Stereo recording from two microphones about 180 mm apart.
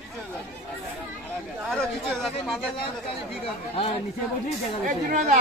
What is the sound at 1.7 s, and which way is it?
Speech, centre (ahead or behind).